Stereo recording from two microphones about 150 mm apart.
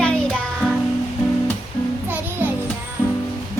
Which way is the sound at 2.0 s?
15° right (ahead or behind).